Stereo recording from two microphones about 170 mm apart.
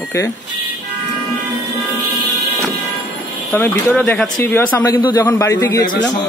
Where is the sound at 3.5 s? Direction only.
10° left (ahead or behind).